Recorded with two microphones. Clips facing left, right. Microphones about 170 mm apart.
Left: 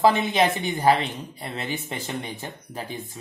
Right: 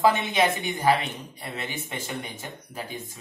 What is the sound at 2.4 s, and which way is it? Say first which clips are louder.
Speech: left 2 dB; 35° left (ahead or behind).